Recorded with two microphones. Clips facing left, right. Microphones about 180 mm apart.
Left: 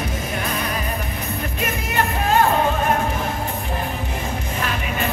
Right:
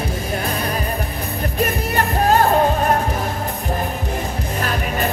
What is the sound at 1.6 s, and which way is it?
Music, 35° right (ahead or behind).